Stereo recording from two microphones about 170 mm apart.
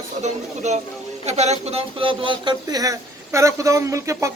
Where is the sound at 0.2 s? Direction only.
40° right (ahead or behind).